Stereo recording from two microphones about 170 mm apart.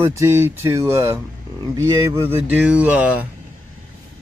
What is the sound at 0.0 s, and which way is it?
Speech, 15° right (ahead or behind).